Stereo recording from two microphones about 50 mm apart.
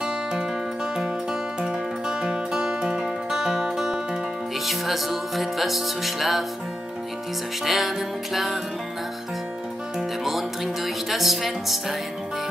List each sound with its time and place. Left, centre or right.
0.0 s music: centre
7.6 s music: centre
9.9 s music: centre